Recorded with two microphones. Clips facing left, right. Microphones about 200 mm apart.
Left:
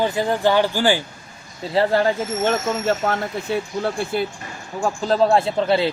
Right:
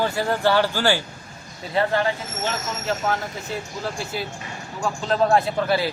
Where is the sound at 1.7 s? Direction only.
35° left (ahead or behind).